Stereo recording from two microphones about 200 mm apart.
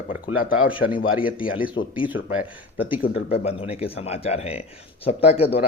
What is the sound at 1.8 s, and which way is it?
Speech, 80° left.